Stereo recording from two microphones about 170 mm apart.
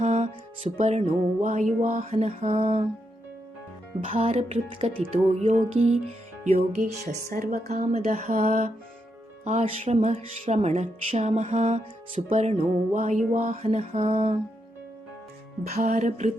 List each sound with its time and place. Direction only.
0.0 s music: 40° right (ahead or behind)
4.0 s music: 35° right (ahead or behind)
7.3 s a woman's voice: 55° right (ahead or behind)
7.7 s music: 40° right (ahead or behind)
15.6 s music: 45° right (ahead or behind)